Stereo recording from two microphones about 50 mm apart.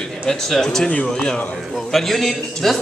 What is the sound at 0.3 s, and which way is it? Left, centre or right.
A man's voice, centre.